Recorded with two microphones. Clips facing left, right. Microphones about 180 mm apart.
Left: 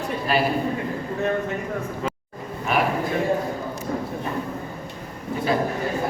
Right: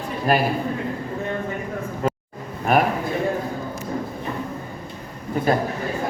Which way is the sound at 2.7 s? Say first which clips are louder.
Right 4 dB; 45° right (ahead or behind).